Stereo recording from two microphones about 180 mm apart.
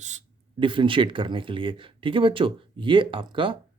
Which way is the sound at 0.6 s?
25° right (ahead or behind).